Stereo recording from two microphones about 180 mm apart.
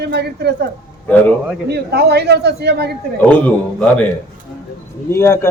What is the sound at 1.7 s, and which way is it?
A man's voice, 65° right (ahead or behind).